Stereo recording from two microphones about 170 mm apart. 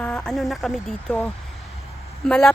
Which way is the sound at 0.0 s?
5° left (ahead or behind).